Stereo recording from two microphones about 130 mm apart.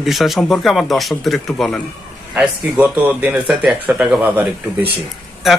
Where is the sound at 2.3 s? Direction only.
10° right (ahead or behind).